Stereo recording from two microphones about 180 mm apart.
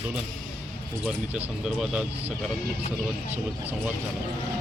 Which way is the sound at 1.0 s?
5° right (ahead or behind).